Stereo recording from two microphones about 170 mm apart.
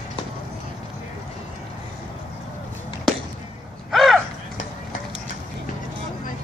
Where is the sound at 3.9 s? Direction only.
Centre (ahead or behind).